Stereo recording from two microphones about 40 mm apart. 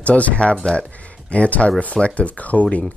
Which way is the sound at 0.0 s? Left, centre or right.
Left.